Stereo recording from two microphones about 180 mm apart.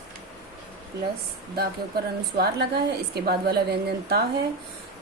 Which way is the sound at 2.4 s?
60° right (ahead or behind).